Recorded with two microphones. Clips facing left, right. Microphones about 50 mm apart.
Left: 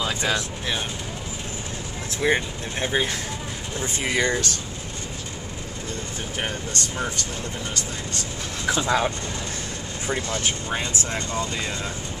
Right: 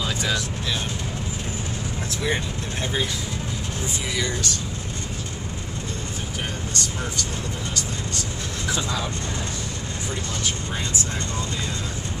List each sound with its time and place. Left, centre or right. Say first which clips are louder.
0.0 s music: left 1 dB; left
2.2 s speech: left 5 dB; left
4.1 s speech: left 6 dB; left
8.6 s speech: left 4 dB; left
10.0 s speech: left 4 dB; left